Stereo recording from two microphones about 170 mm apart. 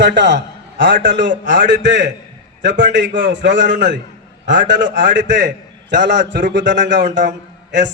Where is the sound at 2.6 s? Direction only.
90° right.